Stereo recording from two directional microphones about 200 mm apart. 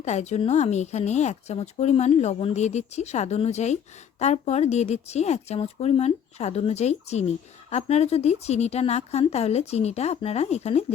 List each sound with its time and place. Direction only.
0.0 s speech: 35° left (ahead or behind)